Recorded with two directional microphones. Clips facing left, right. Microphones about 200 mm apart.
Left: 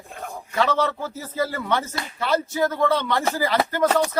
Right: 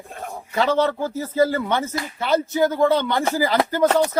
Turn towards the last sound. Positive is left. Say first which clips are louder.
# right 3 dB
turn(degrees=-25)  # may be behind; listen again after turning